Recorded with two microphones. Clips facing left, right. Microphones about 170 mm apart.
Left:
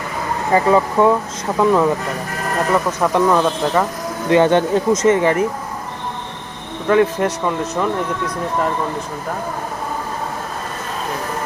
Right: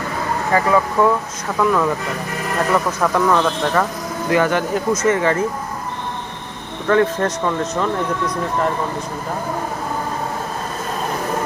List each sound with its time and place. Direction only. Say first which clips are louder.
0.5 s speech: left 3 dB; 25° left (ahead or behind)
3.0 s speech: left 3 dB; 20° left (ahead or behind)
4.3 s speech: left 4 dB; 25° left (ahead or behind)
6.8 s speech: left 1 dB; 15° left (ahead or behind)